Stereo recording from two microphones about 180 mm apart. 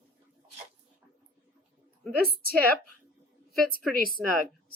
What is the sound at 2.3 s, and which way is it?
Speech, 55° right (ahead or behind).